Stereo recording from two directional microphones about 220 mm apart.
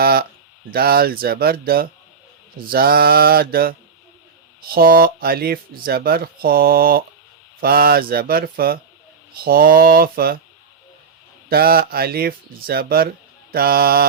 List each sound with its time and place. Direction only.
0.0 s a sound: 45° right (ahead or behind)
0.7 s speech: 45° right (ahead or behind)
11.4 s speech: 45° right (ahead or behind)